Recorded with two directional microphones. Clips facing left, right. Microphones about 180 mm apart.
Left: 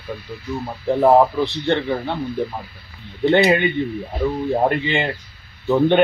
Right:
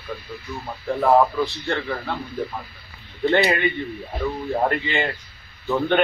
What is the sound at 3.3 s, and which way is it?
A man's voice, 25° left (ahead or behind).